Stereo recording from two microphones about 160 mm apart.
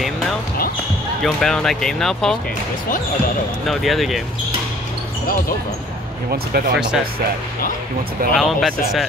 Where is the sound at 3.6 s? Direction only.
Centre (ahead or behind).